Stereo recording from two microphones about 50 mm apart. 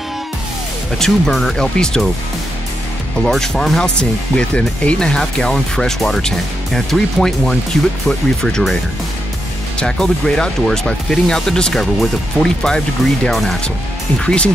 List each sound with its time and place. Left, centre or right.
0.9 s speech: centre
3.3 s speech: centre
4.0 s speech: left
9.8 s speech: centre
14.2 s speech: left